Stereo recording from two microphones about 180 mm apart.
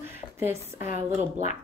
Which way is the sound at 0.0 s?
15° right (ahead or behind).